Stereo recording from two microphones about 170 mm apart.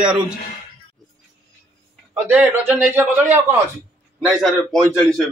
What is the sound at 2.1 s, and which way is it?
A man's voice, 10° right (ahead or behind).